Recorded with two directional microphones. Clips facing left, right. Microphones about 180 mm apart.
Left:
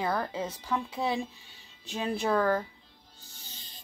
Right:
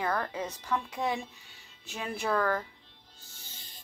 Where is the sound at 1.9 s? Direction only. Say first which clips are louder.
Left 3 dB; 25° left (ahead or behind).